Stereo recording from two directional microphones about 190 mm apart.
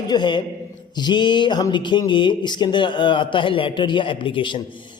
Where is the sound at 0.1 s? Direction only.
25° left (ahead or behind).